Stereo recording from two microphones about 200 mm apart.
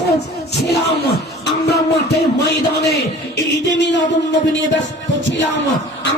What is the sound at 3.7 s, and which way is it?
Music, 60° left (ahead or behind).